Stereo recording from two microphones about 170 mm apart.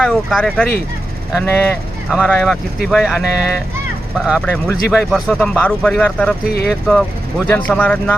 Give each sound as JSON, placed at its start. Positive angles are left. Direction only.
{"t": 0.0, "sound": "speech", "side_deg": 0}
{"t": 2.0, "sound": "speech", "side_deg": 0}
{"t": 6.4, "sound": "speech", "side_deg": 65}
{"t": 6.9, "sound": "speech", "side_deg": 5}